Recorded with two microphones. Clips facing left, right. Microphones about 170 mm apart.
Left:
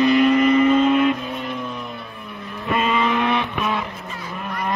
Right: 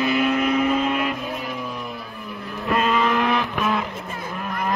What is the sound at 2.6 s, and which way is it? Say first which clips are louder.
Vehicle: even; centre (ahead or behind).